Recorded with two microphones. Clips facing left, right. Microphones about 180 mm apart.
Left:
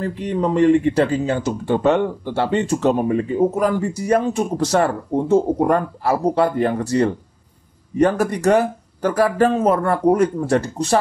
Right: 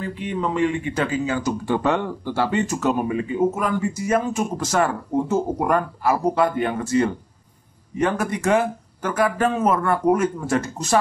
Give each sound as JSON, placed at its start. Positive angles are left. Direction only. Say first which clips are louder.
{"t": 0.0, "sound": "speech", "louder": "left 4 dB", "side_deg": 40}